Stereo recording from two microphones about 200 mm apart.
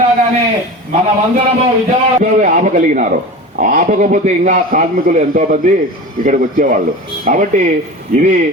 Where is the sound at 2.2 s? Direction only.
40° right (ahead or behind).